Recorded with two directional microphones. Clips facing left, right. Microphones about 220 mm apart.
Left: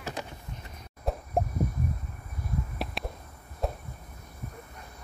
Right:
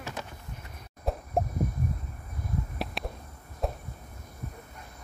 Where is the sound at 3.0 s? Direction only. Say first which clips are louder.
Even; centre (ahead or behind).